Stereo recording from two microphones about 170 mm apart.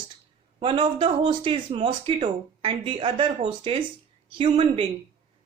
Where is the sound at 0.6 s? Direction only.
30° right (ahead or behind).